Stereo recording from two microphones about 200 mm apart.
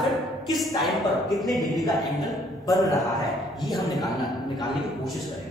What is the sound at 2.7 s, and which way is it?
Speech, 15° left (ahead or behind).